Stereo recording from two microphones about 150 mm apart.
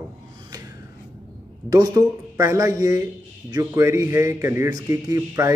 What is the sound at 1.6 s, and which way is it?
A man's voice, 25° right (ahead or behind).